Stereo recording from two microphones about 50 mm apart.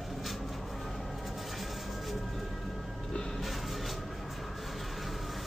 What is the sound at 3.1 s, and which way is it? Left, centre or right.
Music, centre.